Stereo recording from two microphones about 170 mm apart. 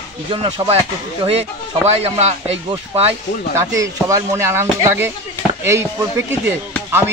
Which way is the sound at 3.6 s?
20° right (ahead or behind).